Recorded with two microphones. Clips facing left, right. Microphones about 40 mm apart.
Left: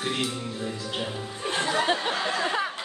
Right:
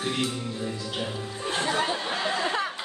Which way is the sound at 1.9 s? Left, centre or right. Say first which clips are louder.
Left 3 dB; left.